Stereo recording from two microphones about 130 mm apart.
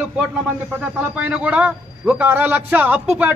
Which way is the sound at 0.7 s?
10° right (ahead or behind).